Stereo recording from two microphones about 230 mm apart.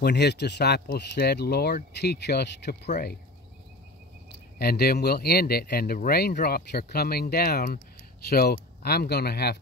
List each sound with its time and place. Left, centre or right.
0.0 s speech: left
4.6 s speech: left